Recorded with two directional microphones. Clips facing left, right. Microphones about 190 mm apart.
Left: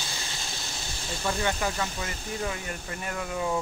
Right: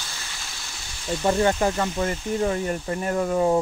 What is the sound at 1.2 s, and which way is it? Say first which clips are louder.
Speech: right 8 dB; 40° right (ahead or behind).